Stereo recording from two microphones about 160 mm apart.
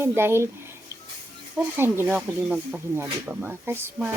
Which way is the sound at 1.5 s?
15° right (ahead or behind).